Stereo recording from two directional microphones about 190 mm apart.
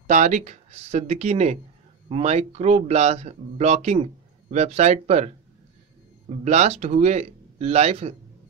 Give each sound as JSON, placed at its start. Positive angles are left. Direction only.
{"t": 0.0, "sound": "speech", "side_deg": -40}